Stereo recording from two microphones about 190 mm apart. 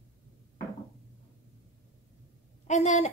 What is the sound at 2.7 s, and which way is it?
Speech, 40° left (ahead or behind).